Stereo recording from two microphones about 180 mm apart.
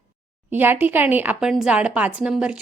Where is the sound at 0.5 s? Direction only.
10° right (ahead or behind).